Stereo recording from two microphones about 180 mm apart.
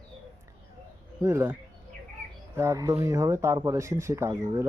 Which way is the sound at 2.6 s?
20° right (ahead or behind).